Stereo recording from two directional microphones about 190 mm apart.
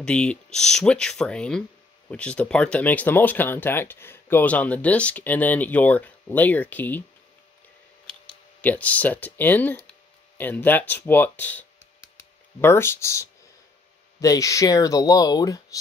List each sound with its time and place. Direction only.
0.0 s speech: 5° left (ahead or behind)
8.3 s speech: 10° left (ahead or behind)